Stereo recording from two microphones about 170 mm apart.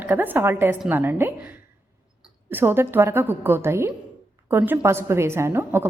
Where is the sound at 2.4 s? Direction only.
10° right (ahead or behind).